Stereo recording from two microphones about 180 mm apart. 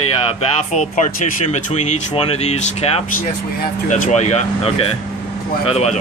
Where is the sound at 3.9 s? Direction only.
40° left (ahead or behind).